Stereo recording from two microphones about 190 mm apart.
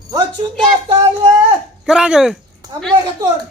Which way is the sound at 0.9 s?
25° right (ahead or behind).